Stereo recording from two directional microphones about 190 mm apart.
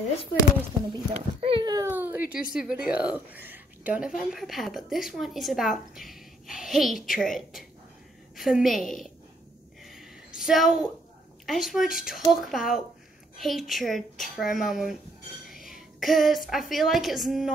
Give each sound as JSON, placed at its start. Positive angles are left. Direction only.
{"t": 0.9, "sound": "a child's voice", "side_deg": -25}
{"t": 1.9, "sound": "speech", "side_deg": -10}
{"t": 9.8, "sound": "a sound", "side_deg": 0}
{"t": 11.4, "sound": "a woman's voice", "side_deg": 0}